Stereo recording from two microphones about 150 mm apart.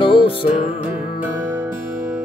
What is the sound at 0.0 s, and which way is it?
Music, 35° left (ahead or behind).